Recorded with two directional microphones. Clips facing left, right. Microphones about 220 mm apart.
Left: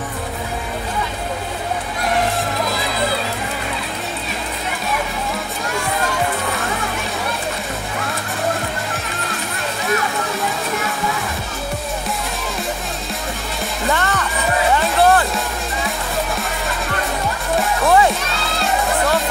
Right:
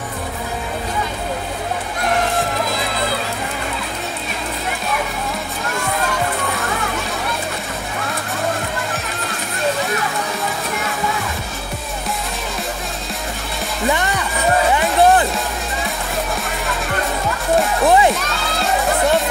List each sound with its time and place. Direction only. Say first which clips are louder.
13.8 s music: right 1 dB; 15° right (ahead or behind)
17.8 s music: even; 20° right (ahead or behind)